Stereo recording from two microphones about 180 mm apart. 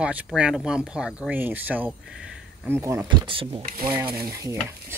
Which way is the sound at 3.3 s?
30° right (ahead or behind).